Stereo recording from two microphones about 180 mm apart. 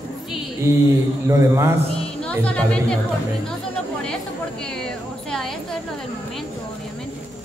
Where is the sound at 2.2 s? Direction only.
5° left (ahead or behind).